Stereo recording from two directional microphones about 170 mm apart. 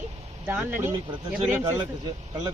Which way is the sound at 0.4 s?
10° right (ahead or behind).